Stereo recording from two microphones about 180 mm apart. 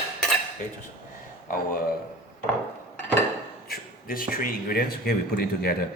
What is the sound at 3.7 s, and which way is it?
Speech, 55° left (ahead or behind).